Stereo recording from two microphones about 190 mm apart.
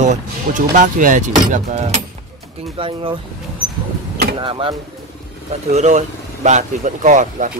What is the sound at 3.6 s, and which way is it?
Vehicle, 5° right (ahead or behind).